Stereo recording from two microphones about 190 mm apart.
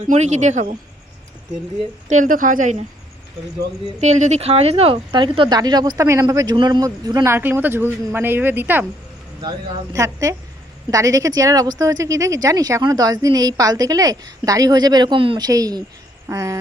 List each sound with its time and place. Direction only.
0.1 s speech: 40° right (ahead or behind)
2.0 s a woman's voice: 40° right (ahead or behind)
4.0 s a man's voice: 35° right (ahead or behind); by 16.6 s 15° right (ahead or behind)